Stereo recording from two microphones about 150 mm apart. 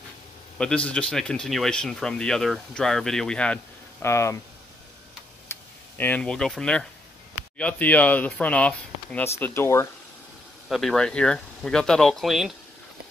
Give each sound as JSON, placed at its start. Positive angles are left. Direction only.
{"t": 0.6, "sound": "speech", "side_deg": 5}
{"t": 4.0, "sound": "speech", "side_deg": 20}
{"t": 5.5, "sound": "speech", "side_deg": 15}
{"t": 10.7, "sound": "speech", "side_deg": 0}